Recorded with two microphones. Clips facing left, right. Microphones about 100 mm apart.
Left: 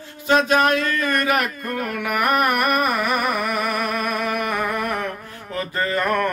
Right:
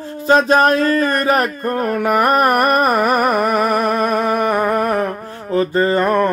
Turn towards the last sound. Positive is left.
turn(degrees=-25)  # may be behind; listen again after turning